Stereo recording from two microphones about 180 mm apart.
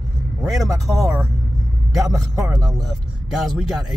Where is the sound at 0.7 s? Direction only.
Centre (ahead or behind).